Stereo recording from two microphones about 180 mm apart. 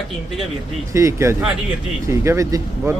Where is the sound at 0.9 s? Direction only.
15° right (ahead or behind).